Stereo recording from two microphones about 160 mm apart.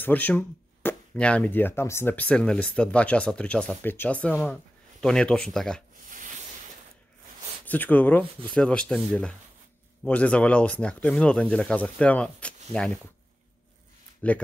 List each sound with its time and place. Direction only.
0.0 s speech: 10° left (ahead or behind)
6.0 s a sound: 55° right (ahead or behind)
7.6 s speech: 10° left (ahead or behind)
14.2 s speech: 10° left (ahead or behind)